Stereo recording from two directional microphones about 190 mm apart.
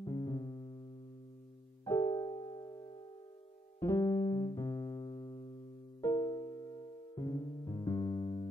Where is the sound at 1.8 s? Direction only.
15° left (ahead or behind).